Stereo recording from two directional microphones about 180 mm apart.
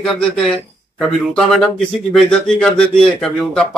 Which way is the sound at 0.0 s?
Centre (ahead or behind).